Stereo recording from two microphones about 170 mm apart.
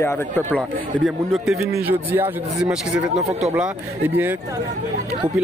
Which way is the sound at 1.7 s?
15° right (ahead or behind).